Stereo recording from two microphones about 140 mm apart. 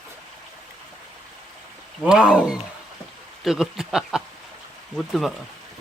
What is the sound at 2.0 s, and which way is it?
Speech, 5° right (ahead or behind).